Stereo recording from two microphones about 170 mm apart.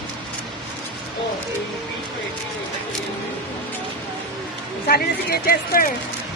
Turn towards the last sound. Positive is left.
turn(degrees=60)  # may be behind; listen again after turning